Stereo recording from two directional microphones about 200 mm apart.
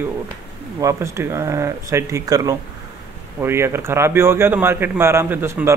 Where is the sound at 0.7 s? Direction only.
15° right (ahead or behind).